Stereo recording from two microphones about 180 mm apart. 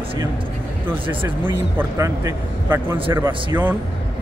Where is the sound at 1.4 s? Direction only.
15° right (ahead or behind).